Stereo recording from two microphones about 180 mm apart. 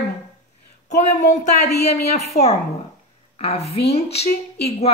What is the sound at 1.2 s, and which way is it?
A woman's voice, 40° left (ahead or behind).